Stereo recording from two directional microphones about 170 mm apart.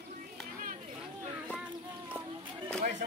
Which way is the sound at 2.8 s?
45° right (ahead or behind).